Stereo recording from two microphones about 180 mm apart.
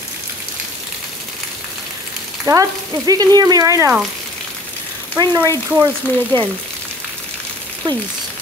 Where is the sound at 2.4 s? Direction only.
20° right (ahead or behind).